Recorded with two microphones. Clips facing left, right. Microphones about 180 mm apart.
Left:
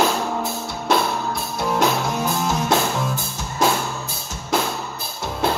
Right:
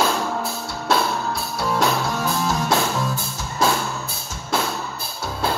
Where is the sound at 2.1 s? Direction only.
15° left (ahead or behind).